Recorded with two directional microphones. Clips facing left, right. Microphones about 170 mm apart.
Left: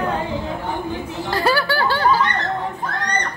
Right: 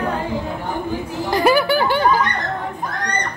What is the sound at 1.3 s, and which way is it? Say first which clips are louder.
Snicker: right 4 dB; 15° right (ahead or behind).